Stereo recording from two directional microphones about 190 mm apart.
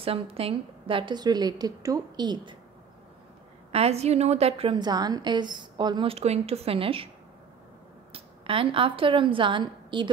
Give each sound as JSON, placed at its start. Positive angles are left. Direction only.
{"t": 0.0, "sound": "a woman's voice", "side_deg": -30}
{"t": 3.7, "sound": "a woman's voice", "side_deg": -35}
{"t": 8.1, "sound": "a woman's voice", "side_deg": -30}